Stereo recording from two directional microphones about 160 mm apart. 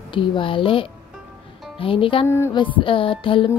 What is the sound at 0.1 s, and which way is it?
Speech, 30° left (ahead or behind).